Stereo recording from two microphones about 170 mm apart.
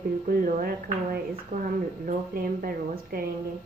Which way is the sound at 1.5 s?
40° right (ahead or behind).